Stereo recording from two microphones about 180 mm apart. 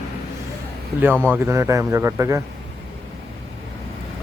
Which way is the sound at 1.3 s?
15° right (ahead or behind).